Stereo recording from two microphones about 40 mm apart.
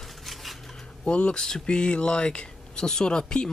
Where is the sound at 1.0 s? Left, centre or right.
Left.